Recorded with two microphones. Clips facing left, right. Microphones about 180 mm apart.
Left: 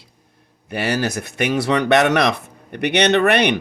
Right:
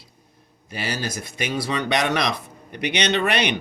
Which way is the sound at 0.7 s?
65° left (ahead or behind).